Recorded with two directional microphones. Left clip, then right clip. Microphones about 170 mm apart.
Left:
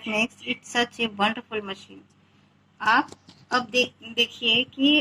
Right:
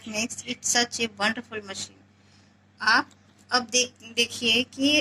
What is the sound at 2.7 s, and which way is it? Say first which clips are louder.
A woman's voice: left 1 dB; 35° left (ahead or behind).